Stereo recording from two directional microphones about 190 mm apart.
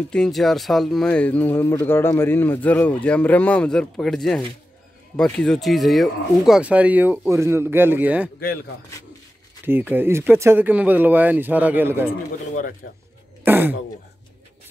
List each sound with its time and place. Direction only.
0.1 s speech: centre (ahead or behind)
9.7 s speech: 10° right (ahead or behind)
12.1 s speech: 45° left (ahead or behind)
13.4 s speech: 10° right (ahead or behind)